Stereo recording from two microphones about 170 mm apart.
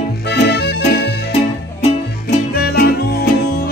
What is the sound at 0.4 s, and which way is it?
Accordion, 90° left.